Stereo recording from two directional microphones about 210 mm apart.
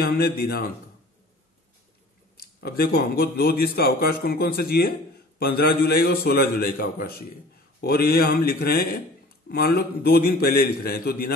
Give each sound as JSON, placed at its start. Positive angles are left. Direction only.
{"t": 0.0, "sound": "speech", "side_deg": 45}
{"t": 2.3, "sound": "speech", "side_deg": 45}